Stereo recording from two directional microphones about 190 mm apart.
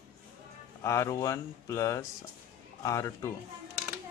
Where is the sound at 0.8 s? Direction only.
15° left (ahead or behind).